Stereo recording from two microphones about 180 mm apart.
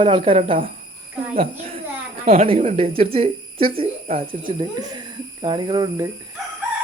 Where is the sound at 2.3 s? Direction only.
35° right (ahead or behind).